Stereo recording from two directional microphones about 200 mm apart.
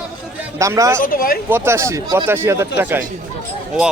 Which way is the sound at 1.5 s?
15° right (ahead or behind).